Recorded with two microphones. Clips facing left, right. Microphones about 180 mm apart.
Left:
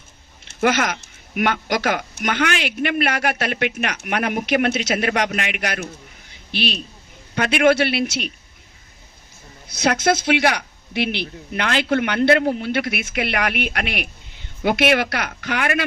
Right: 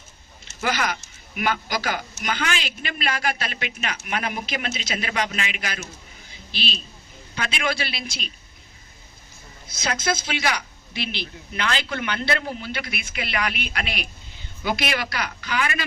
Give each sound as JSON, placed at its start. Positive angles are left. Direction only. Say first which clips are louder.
{"t": 0.4, "sound": "a man's voice", "louder": "left 6 dB", "side_deg": 60}
{"t": 9.6, "sound": "speech", "louder": "left 7 dB", "side_deg": 65}